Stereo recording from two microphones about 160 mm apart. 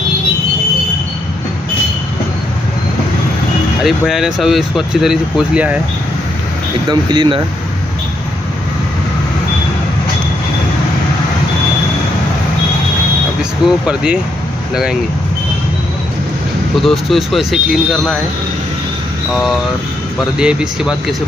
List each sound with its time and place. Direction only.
3.8 s speech: 5° right (ahead or behind)
6.9 s speech: 30° right (ahead or behind)
13.4 s speech: 5° right (ahead or behind)
16.7 s speech: centre (ahead or behind)
19.3 s speech: centre (ahead or behind)